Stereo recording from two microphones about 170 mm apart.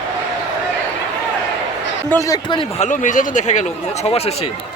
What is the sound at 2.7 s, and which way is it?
Speech, 45° left (ahead or behind).